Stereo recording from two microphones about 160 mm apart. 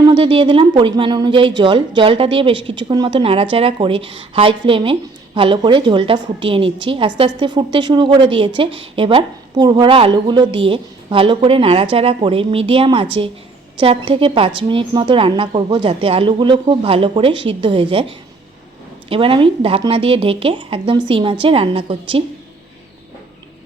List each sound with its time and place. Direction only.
0.0 s a woman's voice: 30° right (ahead or behind)
19.0 s a woman's voice: 35° right (ahead or behind)